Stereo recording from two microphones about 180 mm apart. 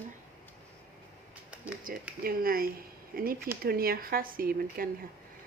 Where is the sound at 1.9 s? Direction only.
50° right (ahead or behind).